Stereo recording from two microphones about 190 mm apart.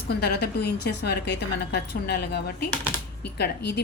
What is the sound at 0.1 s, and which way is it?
A woman's voice, 60° left (ahead or behind).